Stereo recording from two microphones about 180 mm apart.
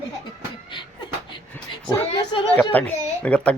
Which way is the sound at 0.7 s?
25° left (ahead or behind).